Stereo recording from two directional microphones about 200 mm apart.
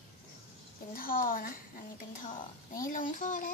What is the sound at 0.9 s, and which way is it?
A child's voice, 45° left (ahead or behind).